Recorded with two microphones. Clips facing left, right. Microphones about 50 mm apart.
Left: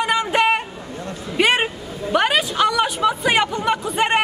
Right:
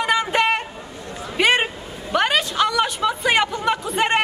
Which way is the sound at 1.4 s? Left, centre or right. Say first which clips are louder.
Even; centre.